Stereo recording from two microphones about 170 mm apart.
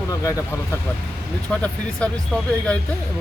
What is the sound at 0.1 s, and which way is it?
Speech, 20° left (ahead or behind).